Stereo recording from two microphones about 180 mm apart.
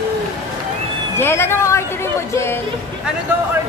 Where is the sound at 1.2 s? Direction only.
15° left (ahead or behind).